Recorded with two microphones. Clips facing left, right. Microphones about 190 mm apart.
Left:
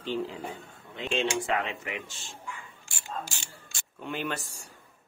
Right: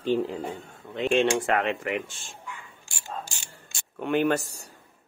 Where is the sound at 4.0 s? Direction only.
60° right (ahead or behind); by 4.6 s 45° right (ahead or behind).